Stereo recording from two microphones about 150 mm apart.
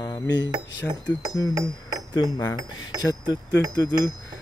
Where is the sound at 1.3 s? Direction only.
25° left (ahead or behind).